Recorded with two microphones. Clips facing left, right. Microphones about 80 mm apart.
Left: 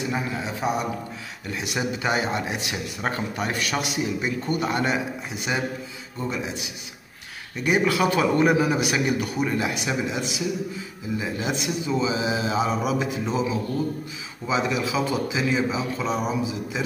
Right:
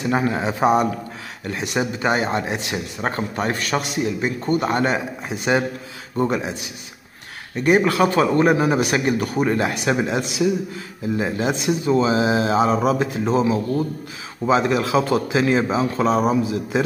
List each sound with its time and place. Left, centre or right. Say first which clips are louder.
0.1 s speech: right 7 dB; right
1.5 s speech: right 4 dB; right
6.1 s a man's voice: right 8 dB; right
7.5 s a man's voice: right 5 dB; right
14.7 s a man's voice: right 6 dB; right